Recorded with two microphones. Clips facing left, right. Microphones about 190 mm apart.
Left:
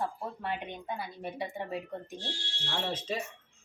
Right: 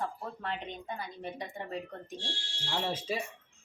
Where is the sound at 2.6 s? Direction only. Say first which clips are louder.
Right 1 dB; 10° right (ahead or behind).